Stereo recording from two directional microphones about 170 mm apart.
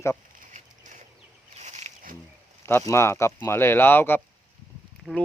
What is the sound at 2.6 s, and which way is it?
Speech, 15° left (ahead or behind).